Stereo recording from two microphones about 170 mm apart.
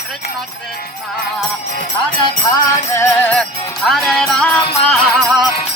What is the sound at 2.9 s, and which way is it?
Music, 15° left (ahead or behind).